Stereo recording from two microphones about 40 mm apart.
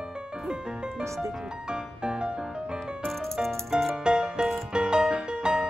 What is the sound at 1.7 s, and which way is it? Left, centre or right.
Music, right.